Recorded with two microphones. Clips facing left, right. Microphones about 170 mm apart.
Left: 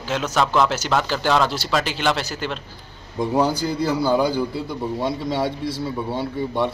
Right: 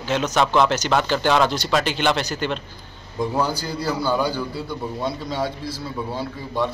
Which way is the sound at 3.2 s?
20° left (ahead or behind).